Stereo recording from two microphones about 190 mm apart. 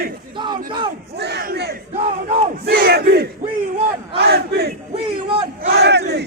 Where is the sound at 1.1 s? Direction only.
60° right (ahead or behind).